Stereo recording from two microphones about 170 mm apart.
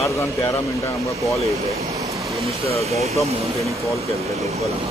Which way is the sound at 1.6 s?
40° right (ahead or behind).